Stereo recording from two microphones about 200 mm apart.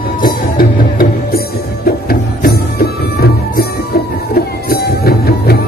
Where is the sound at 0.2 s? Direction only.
50° left (ahead or behind).